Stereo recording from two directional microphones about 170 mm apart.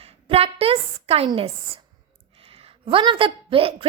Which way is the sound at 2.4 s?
35° right (ahead or behind).